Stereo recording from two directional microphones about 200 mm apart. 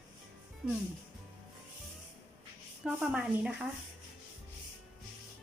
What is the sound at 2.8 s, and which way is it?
Speech, 5° right (ahead or behind).